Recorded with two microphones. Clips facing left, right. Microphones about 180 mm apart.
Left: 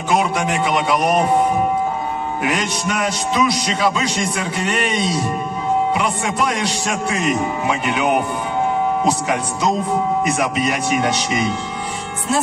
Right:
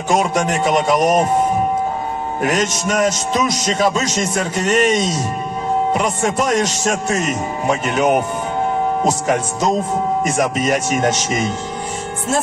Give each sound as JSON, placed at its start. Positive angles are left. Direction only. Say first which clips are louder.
{"t": 0.1, "sound": "a man's voice", "louder": "right 2 dB", "side_deg": -45}
{"t": 2.4, "sound": "a man's voice", "louder": "right 4 dB", "side_deg": -45}